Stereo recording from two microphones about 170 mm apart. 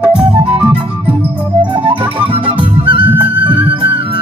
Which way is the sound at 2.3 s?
30° right (ahead or behind).